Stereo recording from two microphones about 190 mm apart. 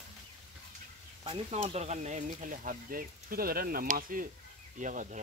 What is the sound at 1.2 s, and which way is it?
Speech, 35° right (ahead or behind).